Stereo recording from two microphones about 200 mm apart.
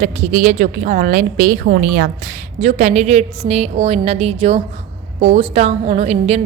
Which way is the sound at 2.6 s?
35° right (ahead or behind).